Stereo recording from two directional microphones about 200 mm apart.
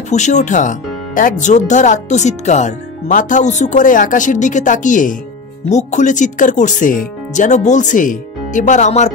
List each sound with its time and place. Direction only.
0.1 s speech: 35° left (ahead or behind)